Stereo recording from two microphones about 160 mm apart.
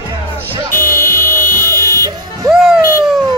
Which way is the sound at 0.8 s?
65° left (ahead or behind).